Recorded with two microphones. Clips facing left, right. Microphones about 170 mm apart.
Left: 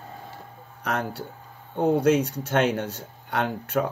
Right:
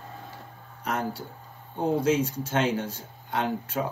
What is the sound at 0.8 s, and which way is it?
Speech, 65° left (ahead or behind).